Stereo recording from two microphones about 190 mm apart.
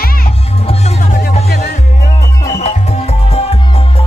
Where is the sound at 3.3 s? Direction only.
35° left (ahead or behind).